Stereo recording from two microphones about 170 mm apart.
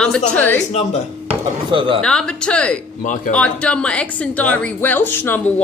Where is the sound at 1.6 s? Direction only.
30° right (ahead or behind).